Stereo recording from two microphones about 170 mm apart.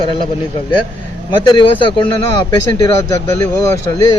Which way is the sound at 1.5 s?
30° left (ahead or behind).